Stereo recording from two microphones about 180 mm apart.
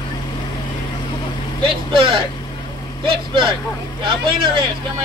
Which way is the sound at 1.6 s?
30° right (ahead or behind).